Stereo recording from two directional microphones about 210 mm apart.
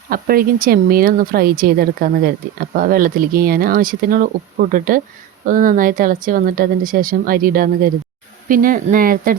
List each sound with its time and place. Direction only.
0.1 s a woman's voice: 45° right (ahead or behind)